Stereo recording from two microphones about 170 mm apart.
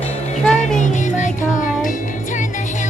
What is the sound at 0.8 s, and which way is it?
Music, 45° left (ahead or behind).